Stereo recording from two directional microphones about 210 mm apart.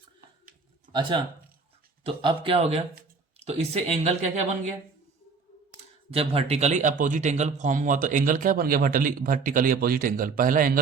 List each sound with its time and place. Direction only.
2.0 s speech: 25° right (ahead or behind)
6.1 s speech: 30° right (ahead or behind)